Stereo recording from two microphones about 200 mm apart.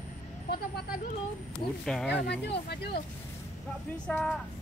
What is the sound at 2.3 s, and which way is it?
Speech, 55° left (ahead or behind).